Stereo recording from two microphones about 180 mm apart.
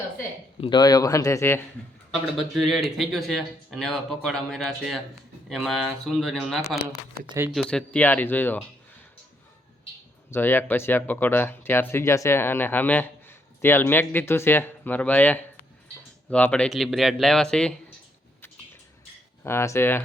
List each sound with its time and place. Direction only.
0.6 s speech: 25° left (ahead or behind)
2.4 s speech: centre (ahead or behind)
10.3 s speech: 10° left (ahead or behind)
19.5 s speech: 15° left (ahead or behind)